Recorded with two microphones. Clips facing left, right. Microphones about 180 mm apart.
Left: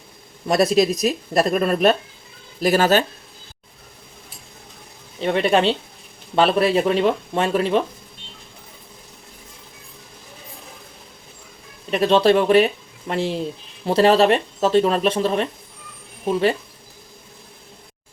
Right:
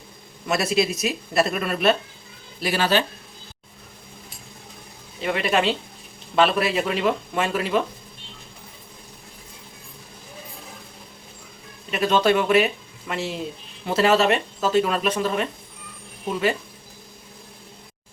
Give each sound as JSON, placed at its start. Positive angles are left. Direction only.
{"t": 0.4, "sound": "speech", "side_deg": 35}
{"t": 5.2, "sound": "speech", "side_deg": 30}
{"t": 11.9, "sound": "speech", "side_deg": 35}